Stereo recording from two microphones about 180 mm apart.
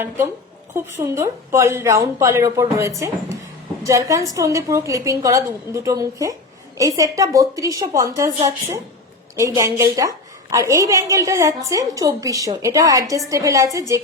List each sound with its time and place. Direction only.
0.7 s a woman's voice: 15° right (ahead or behind)